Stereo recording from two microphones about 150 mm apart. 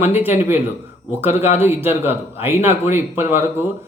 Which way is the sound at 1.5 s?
15° right (ahead or behind).